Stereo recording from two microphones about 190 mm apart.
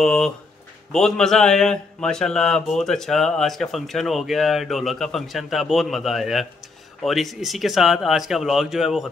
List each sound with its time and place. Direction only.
0.0 s a man's voice: centre (ahead or behind)